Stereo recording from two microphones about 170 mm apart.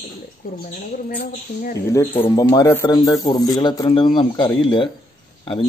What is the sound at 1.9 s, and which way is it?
Speech, 15° left (ahead or behind).